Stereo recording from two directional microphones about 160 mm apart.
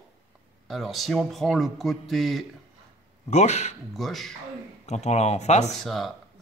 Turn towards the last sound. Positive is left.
turn(degrees=0)  # may be behind; listen again after turning